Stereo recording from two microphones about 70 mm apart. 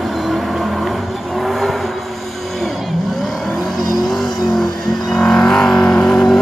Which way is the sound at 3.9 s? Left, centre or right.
Left.